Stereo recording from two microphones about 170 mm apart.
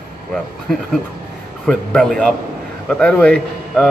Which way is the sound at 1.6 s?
Centre (ahead or behind).